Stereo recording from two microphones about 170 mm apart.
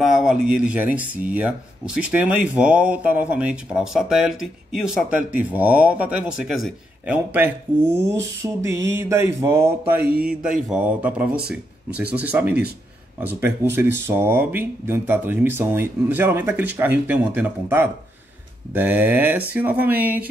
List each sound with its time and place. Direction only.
0.0 s speech: 5° right (ahead or behind)
10.2 s speech: 5° right (ahead or behind)
11.3 s speech: 65° right (ahead or behind)
12.0 s speech: 10° right (ahead or behind)